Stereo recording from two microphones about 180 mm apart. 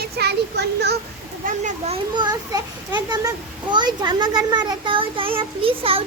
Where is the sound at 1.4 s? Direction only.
40° right (ahead or behind).